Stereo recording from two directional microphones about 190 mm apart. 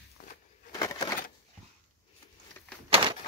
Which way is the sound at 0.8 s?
20° left (ahead or behind).